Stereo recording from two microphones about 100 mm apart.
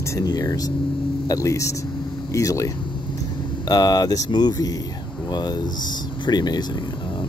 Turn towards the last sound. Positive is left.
turn(degrees=45)  # may be behind; listen again after turning